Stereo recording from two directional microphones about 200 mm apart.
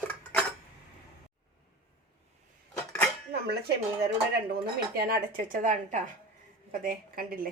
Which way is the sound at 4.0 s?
50° right (ahead or behind).